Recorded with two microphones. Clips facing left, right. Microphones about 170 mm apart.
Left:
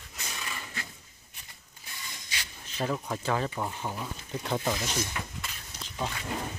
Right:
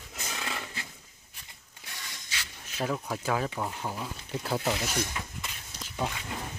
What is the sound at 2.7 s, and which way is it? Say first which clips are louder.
Speech: even; centre (ahead or behind).